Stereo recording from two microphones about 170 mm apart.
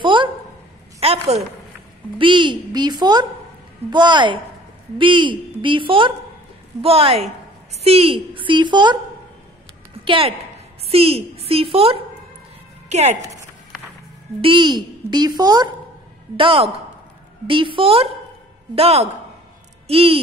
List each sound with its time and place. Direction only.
0.0 s a sound: 30° right (ahead or behind)
2.1 s a child's voice: 30° right (ahead or behind)
10.0 s a woman's voice: 30° right (ahead or behind)
14.4 s a child's voice: 30° right (ahead or behind)